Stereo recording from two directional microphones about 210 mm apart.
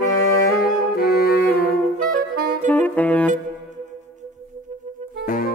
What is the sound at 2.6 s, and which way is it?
Saxophone, 10° left (ahead or behind).